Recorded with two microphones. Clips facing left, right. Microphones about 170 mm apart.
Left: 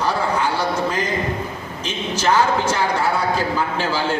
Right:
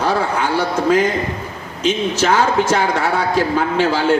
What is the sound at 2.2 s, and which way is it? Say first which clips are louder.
A man's voice: even; 90° right.